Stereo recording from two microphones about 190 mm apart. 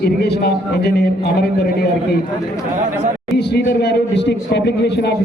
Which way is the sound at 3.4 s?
60° left (ahead or behind).